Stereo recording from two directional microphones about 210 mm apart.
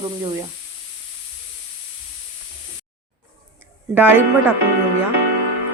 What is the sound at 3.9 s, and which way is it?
Speech, 10° right (ahead or behind).